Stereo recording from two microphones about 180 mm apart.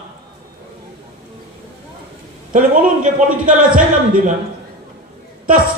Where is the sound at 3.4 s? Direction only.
50° right (ahead or behind).